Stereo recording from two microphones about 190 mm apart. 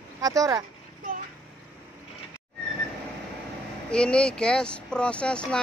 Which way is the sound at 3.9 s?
5° left (ahead or behind).